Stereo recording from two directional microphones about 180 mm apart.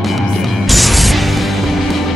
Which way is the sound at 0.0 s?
Centre (ahead or behind).